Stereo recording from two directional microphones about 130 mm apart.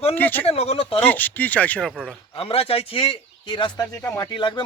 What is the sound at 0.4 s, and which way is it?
Speech, 50° left (ahead or behind).